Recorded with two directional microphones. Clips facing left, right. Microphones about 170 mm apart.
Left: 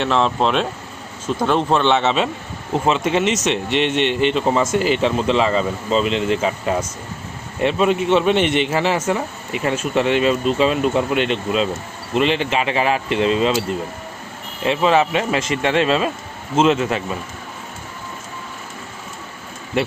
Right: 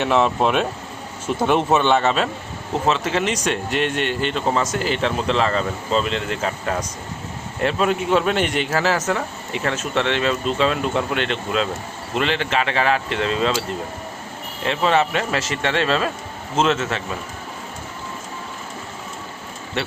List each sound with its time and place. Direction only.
0.0 s speech: 10° right (ahead or behind); by 3.1 s 5° left (ahead or behind)
3.5 s speech: 40° right (ahead or behind)
4.4 s speech: 5° left (ahead or behind)
7.6 s speech: centre (ahead or behind)
14.7 s a man's voice: 5° left (ahead or behind)